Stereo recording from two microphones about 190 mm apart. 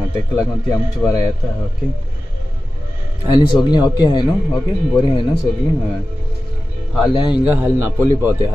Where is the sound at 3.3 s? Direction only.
25° left (ahead or behind).